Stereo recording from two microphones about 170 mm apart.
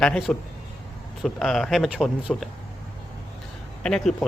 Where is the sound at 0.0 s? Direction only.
5° left (ahead or behind).